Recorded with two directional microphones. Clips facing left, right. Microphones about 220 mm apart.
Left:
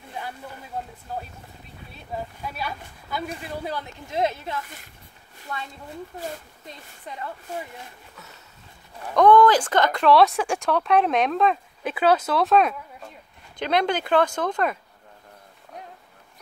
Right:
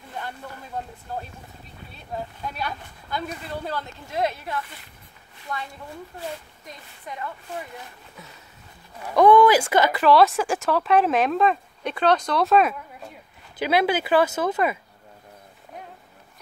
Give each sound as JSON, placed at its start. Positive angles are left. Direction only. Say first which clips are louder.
{"t": 2.4, "sound": "speech", "louder": "right 1 dB", "side_deg": 5}
{"t": 3.6, "sound": "speech", "louder": "even", "side_deg": 15}
{"t": 9.0, "sound": "speech", "louder": "right 1 dB", "side_deg": -10}